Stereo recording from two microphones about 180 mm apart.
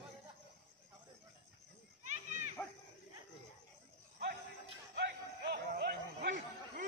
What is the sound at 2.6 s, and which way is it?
Dog, 10° left (ahead or behind).